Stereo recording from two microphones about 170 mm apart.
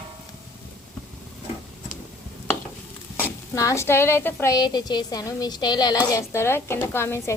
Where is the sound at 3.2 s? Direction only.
15° left (ahead or behind).